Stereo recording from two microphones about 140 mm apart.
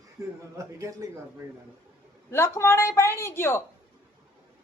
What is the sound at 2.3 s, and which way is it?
A woman's voice, 20° left (ahead or behind).